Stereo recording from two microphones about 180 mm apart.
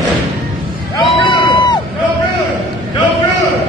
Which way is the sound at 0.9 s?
25° left (ahead or behind).